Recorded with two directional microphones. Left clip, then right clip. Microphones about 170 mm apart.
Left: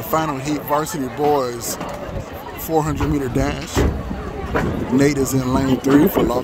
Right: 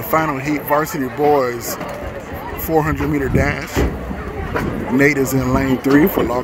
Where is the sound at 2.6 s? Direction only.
Centre (ahead or behind).